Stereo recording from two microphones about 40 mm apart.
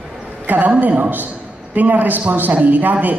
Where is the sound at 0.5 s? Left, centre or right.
Right.